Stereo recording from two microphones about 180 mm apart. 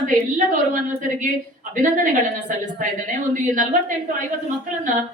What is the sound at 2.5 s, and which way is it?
Speech, 45° right (ahead or behind).